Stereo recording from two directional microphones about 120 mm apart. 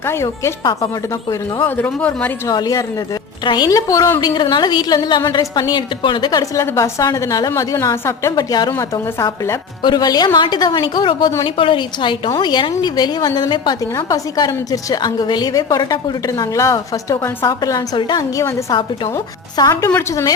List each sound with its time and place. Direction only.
0.0 s a woman's voice: 20° left (ahead or behind)
1.6 s speech: 15° left (ahead or behind)
2.5 s a woman's voice: 35° left (ahead or behind)
8.8 s a woman's voice: 25° left (ahead or behind)
9.8 s a woman's voice: 35° left (ahead or behind)
19.9 s a woman's voice: 20° left (ahead or behind)